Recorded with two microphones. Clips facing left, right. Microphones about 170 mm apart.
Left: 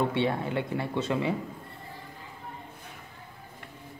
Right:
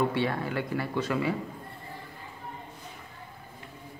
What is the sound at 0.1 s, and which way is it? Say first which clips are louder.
Speech: left 1 dB; 25° left (ahead or behind).